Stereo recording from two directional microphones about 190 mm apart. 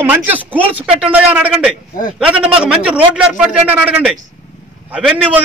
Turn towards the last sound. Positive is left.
turn(degrees=-5)  # may be behind; listen again after turning